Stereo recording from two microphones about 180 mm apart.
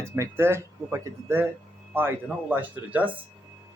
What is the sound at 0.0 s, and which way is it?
Speech, 15° right (ahead or behind).